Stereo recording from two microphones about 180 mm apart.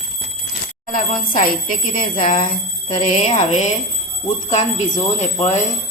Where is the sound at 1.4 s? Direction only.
50° left (ahead or behind).